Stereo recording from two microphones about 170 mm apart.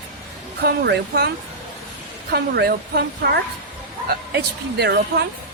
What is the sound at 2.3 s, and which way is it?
Speech, 65° right (ahead or behind).